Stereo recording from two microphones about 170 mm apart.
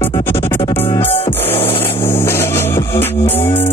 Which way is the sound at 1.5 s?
35° left (ahead or behind).